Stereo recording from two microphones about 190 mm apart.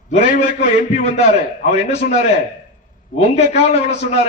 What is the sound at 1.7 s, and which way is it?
A man's voice, 35° left (ahead or behind).